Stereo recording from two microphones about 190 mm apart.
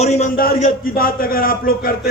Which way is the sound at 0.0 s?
35° left (ahead or behind).